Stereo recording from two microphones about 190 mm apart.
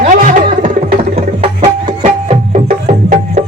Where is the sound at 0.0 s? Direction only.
40° right (ahead or behind).